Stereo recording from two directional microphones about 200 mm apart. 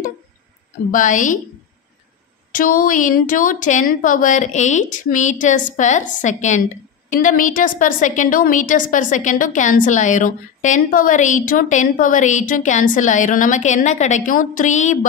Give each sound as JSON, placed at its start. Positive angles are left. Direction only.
{"t": 0.9, "sound": "a woman's voice", "side_deg": 40}
{"t": 2.5, "sound": "a woman's voice", "side_deg": 45}